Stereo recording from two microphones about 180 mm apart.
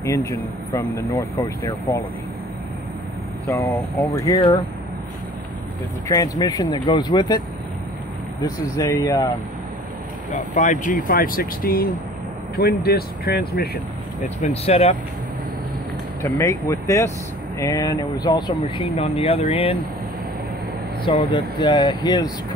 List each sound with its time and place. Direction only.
0.0 s speech: 15° left (ahead or behind)
3.4 s speech: 15° left (ahead or behind)
6.0 s speech: 20° left (ahead or behind)
10.3 s speech: 45° left (ahead or behind)
14.4 s speech: 35° left (ahead or behind)
16.2 s speech: 15° left (ahead or behind); by 19.7 s 30° left (ahead or behind)
21.0 s speech: 30° left (ahead or behind)